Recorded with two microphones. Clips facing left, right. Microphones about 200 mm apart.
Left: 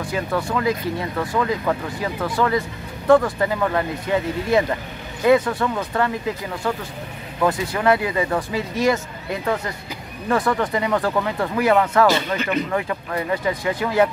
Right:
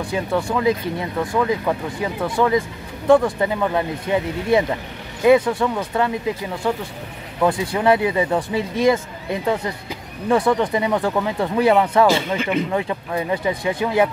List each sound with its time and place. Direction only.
0.1 s speech: 15° right (ahead or behind)